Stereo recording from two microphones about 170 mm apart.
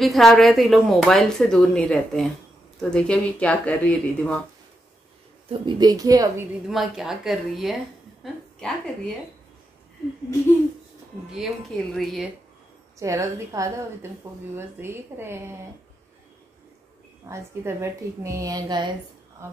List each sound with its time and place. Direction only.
0.0 s speech: centre (ahead or behind)
5.5 s a woman's voice: 25° right (ahead or behind)
6.7 s a woman's voice: centre (ahead or behind)
11.3 s speech: centre (ahead or behind)
13.0 s a woman's voice: 20° right (ahead or behind)
17.3 s a woman's voice: 15° right (ahead or behind)